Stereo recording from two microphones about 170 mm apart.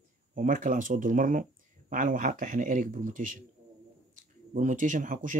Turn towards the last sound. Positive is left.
turn(degrees=-50)  # may be behind; listen again after turning